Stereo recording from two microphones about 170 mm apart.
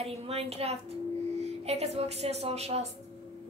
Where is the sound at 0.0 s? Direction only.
35° right (ahead or behind).